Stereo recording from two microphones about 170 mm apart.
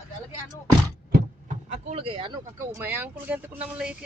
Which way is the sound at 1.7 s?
40° right (ahead or behind).